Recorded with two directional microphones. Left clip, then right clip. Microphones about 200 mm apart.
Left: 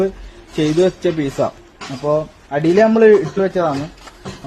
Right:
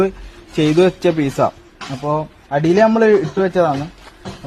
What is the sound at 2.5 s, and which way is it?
A man's voice, 55° right (ahead or behind).